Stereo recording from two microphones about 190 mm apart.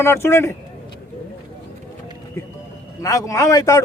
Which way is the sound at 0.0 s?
15° left (ahead or behind).